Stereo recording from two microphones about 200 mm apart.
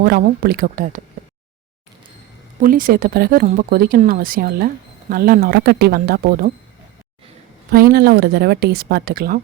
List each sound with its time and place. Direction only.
0.0 s speech: 50° right (ahead or behind)
2.6 s speech: 45° right (ahead or behind)
7.7 s speech: 50° right (ahead or behind)